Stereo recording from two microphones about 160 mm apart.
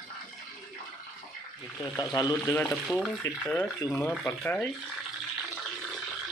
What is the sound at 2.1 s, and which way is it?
Speech, 25° left (ahead or behind).